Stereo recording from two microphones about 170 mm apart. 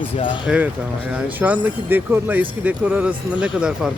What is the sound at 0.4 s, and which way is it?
Speech, 5° right (ahead or behind).